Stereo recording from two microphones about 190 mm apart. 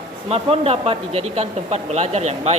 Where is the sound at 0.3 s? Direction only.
30° right (ahead or behind).